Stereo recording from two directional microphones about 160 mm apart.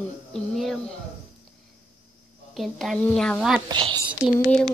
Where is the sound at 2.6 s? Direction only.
Centre (ahead or behind).